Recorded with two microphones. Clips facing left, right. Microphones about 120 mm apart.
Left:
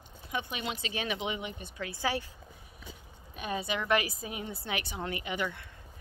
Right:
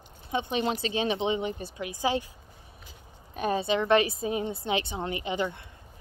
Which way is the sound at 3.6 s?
25° right (ahead or behind).